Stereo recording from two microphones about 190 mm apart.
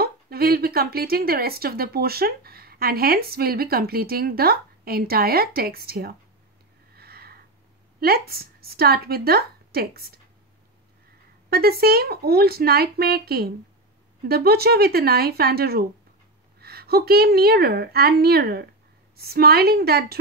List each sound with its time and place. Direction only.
0.0 s a woman's voice: 55° right (ahead or behind)
7.0 s a sound: 55° right (ahead or behind)
8.0 s a woman's voice: 55° right (ahead or behind)
11.5 s a woman's voice: 55° right (ahead or behind)